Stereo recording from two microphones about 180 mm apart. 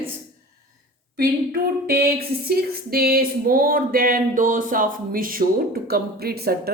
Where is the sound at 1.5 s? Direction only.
60° right (ahead or behind).